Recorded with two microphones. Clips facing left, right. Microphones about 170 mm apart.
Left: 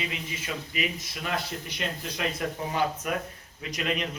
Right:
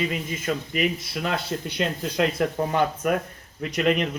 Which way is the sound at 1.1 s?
65° right (ahead or behind).